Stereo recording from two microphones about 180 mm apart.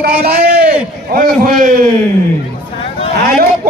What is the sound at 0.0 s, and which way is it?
Speech, 60° right (ahead or behind).